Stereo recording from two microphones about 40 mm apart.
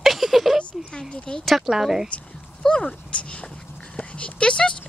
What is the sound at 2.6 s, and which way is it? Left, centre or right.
Speech, centre.